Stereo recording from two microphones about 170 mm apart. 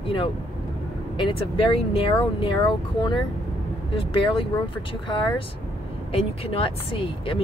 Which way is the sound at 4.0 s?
30° left (ahead or behind).